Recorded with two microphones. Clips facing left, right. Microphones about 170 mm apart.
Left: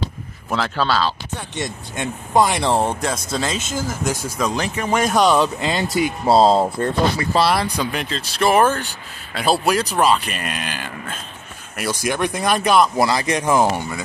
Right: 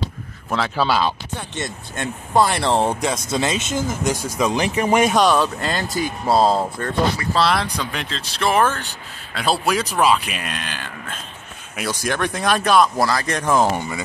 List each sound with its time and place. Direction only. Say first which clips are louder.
0.7 s speech: right 1 dB; 15° right (ahead or behind)
1.5 s speech: left 1 dB; 15° left (ahead or behind)
3.0 s speech: right 1 dB; centre (ahead or behind)
3.3 s speech: right 2 dB; 20° right (ahead or behind)
5.0 s speech: even; 10° left (ahead or behind); by 7.2 s 25° left (ahead or behind)
7.3 s speech: left 2 dB; 5° left (ahead or behind)